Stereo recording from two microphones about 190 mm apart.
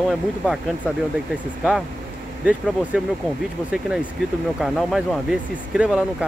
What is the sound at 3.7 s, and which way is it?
Speech, 5° right (ahead or behind).